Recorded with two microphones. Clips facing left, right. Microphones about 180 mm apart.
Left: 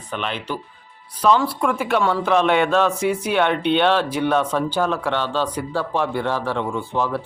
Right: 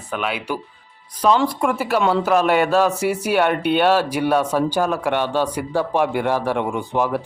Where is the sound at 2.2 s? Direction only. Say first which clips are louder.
Right 1 dB; 5° right (ahead or behind).